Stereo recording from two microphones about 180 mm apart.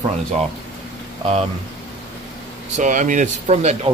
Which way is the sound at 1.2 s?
35° right (ahead or behind).